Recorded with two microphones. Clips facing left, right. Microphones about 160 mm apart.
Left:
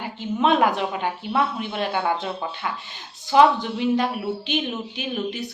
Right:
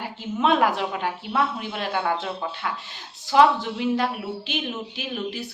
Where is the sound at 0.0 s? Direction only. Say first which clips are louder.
Left 2 dB; centre (ahead or behind).